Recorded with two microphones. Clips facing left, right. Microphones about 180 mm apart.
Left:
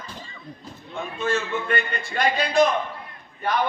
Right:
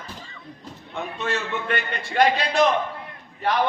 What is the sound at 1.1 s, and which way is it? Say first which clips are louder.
A man's voice: left 3 dB; 70° right (ahead or behind).